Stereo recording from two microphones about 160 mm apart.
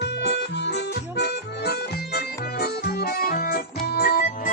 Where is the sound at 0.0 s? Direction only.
90° left.